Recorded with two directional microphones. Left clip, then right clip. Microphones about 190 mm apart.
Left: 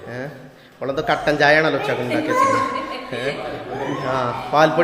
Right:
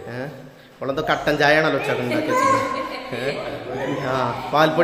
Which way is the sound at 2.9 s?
Centre (ahead or behind).